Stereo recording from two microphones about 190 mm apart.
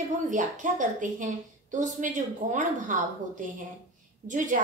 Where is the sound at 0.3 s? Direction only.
40° right (ahead or behind).